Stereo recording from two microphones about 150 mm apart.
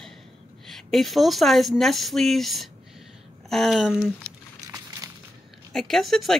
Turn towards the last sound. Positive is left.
turn(degrees=0)  # may be behind; listen again after turning